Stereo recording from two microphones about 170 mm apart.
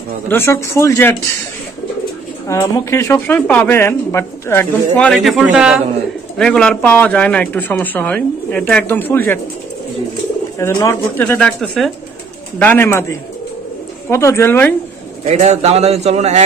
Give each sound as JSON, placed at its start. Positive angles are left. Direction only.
{"t": 0.3, "sound": "speech", "side_deg": 15}
{"t": 2.4, "sound": "speech", "side_deg": 20}
{"t": 10.6, "sound": "speech", "side_deg": 20}
{"t": 15.3, "sound": "a man's voice", "side_deg": -40}